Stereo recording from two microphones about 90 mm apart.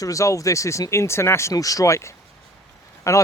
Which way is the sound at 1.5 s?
40° left (ahead or behind).